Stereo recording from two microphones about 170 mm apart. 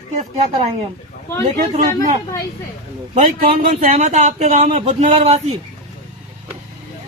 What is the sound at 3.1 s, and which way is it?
Speech, 45° right (ahead or behind).